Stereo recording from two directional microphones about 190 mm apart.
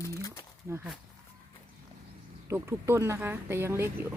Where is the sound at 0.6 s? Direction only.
10° right (ahead or behind).